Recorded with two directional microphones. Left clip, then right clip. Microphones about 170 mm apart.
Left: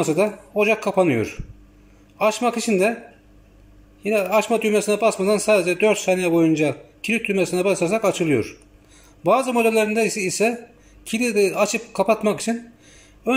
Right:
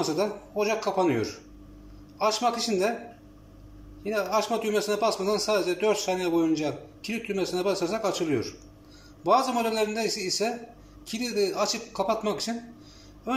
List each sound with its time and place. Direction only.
0.0 s speech: 20° left (ahead or behind)
4.0 s a man's voice: 20° left (ahead or behind)